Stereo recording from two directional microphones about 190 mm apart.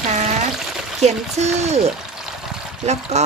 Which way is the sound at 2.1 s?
Centre (ahead or behind).